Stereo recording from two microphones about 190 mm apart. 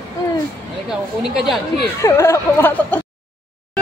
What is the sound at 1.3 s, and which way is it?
Speech, centre (ahead or behind).